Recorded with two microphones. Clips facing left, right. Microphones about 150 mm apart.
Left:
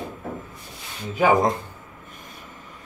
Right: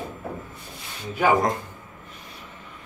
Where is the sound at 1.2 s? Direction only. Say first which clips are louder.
Left 2 dB; 20° left (ahead or behind).